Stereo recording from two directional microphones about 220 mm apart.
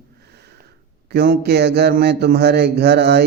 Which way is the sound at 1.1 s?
45° right (ahead or behind).